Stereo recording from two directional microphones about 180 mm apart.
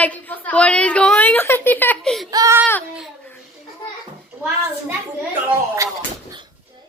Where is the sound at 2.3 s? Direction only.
15° right (ahead or behind).